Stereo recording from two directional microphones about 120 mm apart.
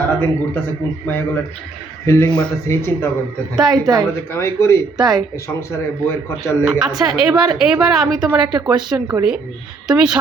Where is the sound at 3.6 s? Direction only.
5° right (ahead or behind).